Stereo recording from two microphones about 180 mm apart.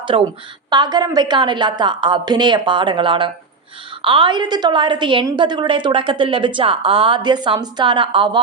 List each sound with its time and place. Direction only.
0.1 s a woman's voice: 30° right (ahead or behind)